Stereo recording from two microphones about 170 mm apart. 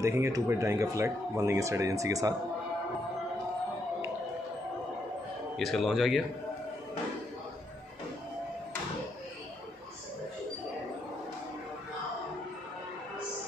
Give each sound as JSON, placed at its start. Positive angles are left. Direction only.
{"t": 0.0, "sound": "speech", "side_deg": -15}
{"t": 5.6, "sound": "a man's voice", "side_deg": 0}